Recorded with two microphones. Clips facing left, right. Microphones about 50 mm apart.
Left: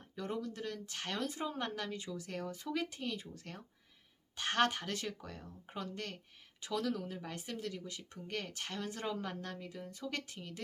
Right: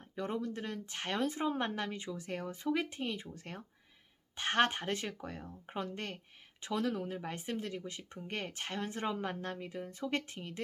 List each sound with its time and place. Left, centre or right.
0.0 s speech: right